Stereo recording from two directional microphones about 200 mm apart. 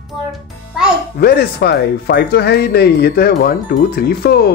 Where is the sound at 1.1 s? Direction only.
50° left (ahead or behind).